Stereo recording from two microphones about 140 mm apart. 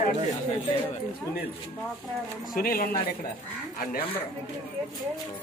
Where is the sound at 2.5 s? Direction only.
90° left.